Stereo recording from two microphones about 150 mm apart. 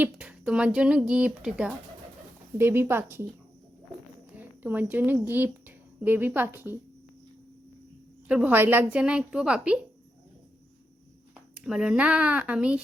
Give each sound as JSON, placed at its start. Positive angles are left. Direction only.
{"t": 0.0, "sound": "speech", "side_deg": -10}
{"t": 4.4, "sound": "speech", "side_deg": -10}
{"t": 8.3, "sound": "speech", "side_deg": -10}
{"t": 11.5, "sound": "speech", "side_deg": -5}